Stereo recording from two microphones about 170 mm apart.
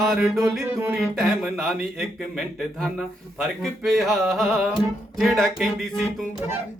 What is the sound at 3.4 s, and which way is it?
Music, centre (ahead or behind).